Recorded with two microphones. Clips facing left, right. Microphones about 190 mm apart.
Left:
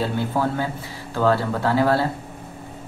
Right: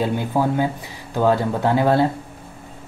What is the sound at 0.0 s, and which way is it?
Speech, 15° right (ahead or behind).